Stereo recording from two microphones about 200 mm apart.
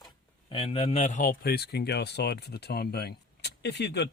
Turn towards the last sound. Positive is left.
turn(degrees=55)  # may be behind; listen again after turning